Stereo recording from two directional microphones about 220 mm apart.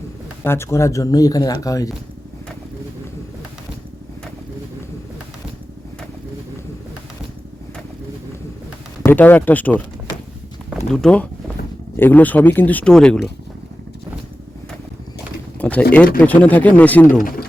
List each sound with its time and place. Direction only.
0.4 s speech: 10° left (ahead or behind)
9.0 s speech: 10° left (ahead or behind)
15.5 s speech: 5° left (ahead or behind)
17.1 s speech: 40° left (ahead or behind)